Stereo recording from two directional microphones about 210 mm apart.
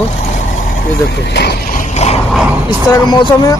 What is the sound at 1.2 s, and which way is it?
Speech, 50° left (ahead or behind).